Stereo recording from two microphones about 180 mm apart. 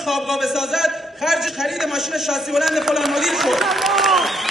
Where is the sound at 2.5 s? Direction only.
Centre (ahead or behind).